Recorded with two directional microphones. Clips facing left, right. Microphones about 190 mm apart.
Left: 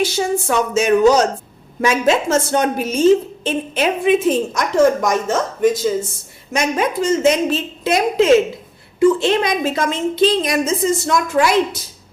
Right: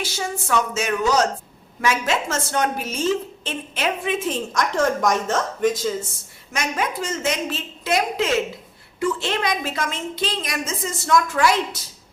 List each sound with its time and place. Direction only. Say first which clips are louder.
0.0 s a woman's voice: left 10 dB; 20° left (ahead or behind); by 5.4 s 5° left (ahead or behind)
6.5 s a woman's voice: left 7 dB; 20° left (ahead or behind)